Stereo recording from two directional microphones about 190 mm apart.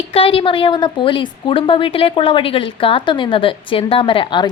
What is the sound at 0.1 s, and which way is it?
A woman's voice, 30° left (ahead or behind).